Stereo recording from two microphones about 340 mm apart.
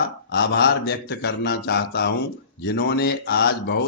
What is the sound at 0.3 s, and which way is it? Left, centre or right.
Speech, left.